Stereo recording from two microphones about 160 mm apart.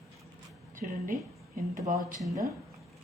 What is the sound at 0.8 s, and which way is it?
Speech, 60° right (ahead or behind).